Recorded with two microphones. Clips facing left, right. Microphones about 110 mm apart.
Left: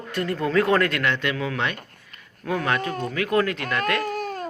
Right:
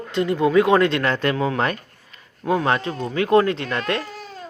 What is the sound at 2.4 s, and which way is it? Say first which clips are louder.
A man's voice: right 4 dB; 25° right (ahead or behind).